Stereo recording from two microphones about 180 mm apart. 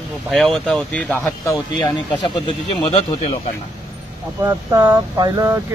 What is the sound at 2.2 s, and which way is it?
Speech, 25° left (ahead or behind).